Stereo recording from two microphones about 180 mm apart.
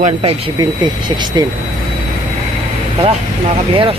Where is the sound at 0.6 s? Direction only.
25° right (ahead or behind).